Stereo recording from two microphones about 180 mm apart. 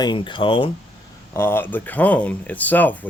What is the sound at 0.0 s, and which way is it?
Speech, 25° left (ahead or behind).